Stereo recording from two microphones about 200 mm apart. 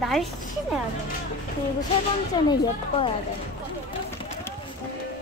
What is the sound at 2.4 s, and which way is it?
Speech, 20° left (ahead or behind).